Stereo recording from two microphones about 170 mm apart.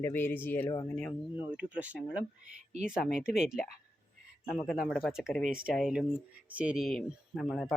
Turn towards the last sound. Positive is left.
turn(degrees=0)  # may be behind; listen again after turning